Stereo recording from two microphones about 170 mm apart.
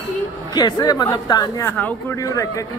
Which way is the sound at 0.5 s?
25° left (ahead or behind).